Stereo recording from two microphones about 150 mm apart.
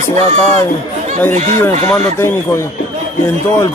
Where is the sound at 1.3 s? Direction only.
50° right (ahead or behind).